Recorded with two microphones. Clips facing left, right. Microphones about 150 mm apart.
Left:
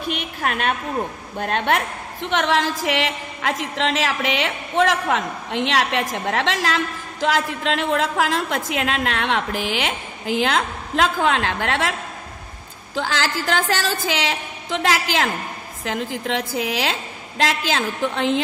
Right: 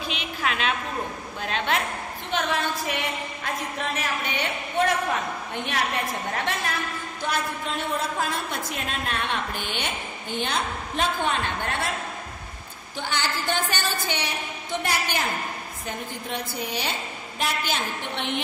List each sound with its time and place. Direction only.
0.1 s a woman's voice: 55° left (ahead or behind)
2.2 s a woman's voice: 75° left (ahead or behind)
12.9 s a woman's voice: 90° left